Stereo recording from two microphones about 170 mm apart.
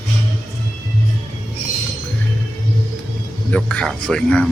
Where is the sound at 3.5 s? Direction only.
5° left (ahead or behind).